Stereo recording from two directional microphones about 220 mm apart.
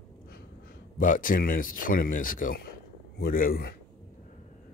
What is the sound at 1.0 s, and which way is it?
Speech, 40° left (ahead or behind).